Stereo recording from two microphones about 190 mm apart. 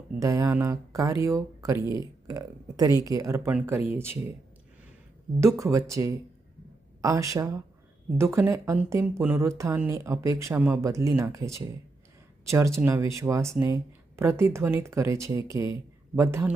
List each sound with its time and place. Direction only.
0.2 s speech: 15° right (ahead or behind)
5.4 s speech: 15° right (ahead or behind)